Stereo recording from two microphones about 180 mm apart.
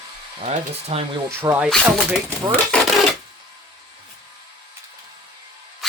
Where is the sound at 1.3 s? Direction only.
10° right (ahead or behind).